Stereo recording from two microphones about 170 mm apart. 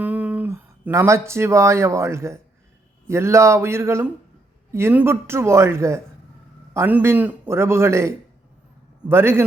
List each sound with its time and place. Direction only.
0.0 s a man's voice: 10° right (ahead or behind)